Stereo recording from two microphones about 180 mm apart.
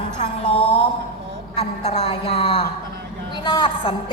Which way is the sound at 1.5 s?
35° left (ahead or behind).